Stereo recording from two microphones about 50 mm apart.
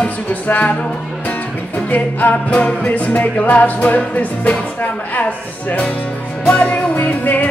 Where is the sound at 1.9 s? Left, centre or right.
Left.